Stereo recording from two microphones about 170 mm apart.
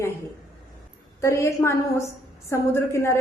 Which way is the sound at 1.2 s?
15° left (ahead or behind).